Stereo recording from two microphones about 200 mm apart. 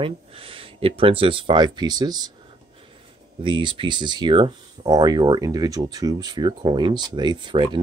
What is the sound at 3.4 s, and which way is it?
Speech, 25° right (ahead or behind).